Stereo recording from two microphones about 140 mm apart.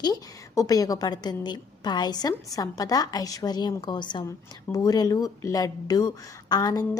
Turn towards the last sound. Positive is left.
turn(degrees=30)  # may be behind; listen again after turning